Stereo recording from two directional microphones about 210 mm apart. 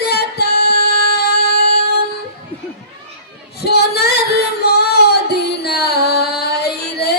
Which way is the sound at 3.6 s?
50° left (ahead or behind).